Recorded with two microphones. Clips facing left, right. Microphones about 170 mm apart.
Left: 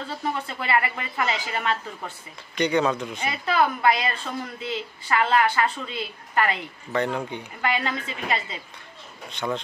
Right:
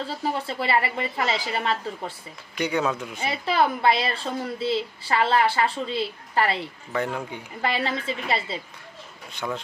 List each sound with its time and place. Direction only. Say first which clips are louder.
0.2 s a woman's voice: right 2 dB; 30° right (ahead or behind)
2.5 s speech: left 3 dB; 5° right (ahead or behind)
3.2 s a woman's voice: right 2 dB; 30° right (ahead or behind)
6.9 s speech: left 2 dB; 5° right (ahead or behind)
7.6 s a woman's voice: right 1 dB; 35° right (ahead or behind)
9.3 s speech: left 2 dB; 5° right (ahead or behind)